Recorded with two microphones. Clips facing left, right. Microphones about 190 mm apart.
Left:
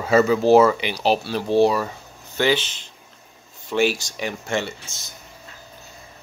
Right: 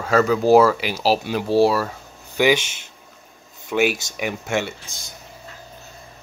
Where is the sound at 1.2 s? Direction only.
15° right (ahead or behind).